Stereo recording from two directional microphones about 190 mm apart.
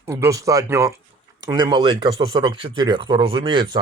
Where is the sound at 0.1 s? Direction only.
15° right (ahead or behind).